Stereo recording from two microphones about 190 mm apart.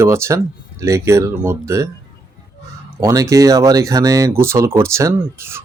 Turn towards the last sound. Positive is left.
turn(degrees=-15)  # may be behind; listen again after turning